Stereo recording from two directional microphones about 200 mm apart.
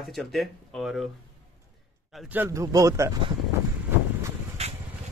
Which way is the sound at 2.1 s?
5° right (ahead or behind).